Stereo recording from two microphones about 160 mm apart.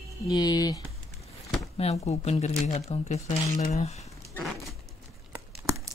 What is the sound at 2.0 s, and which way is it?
Speech, 40° left (ahead or behind).